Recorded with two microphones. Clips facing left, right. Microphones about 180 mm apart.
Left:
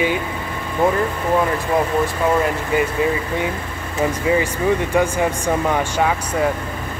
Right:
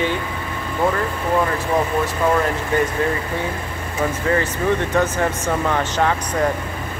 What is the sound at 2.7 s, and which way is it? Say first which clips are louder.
Speech: even; 10° left (ahead or behind).